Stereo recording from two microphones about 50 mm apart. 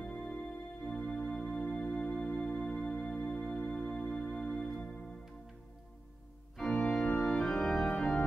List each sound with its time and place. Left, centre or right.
0.0 s organ: left
6.5 s organ: centre